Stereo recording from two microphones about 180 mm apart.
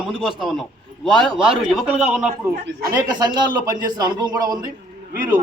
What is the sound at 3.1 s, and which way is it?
A man's voice, 25° right (ahead or behind).